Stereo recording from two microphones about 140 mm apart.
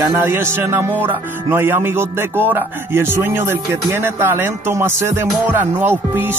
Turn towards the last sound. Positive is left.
turn(degrees=-15)  # may be behind; listen again after turning